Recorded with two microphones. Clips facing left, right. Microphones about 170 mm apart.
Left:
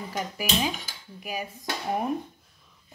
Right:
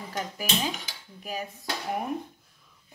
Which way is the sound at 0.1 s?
10° left (ahead or behind).